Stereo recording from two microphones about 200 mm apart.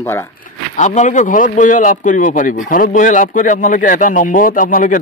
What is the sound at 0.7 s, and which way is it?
Speech, 35° left (ahead or behind).